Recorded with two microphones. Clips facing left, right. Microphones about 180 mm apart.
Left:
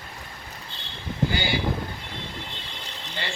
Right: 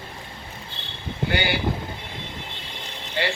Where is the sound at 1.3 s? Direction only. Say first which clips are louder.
Right 3 dB; 60° right (ahead or behind).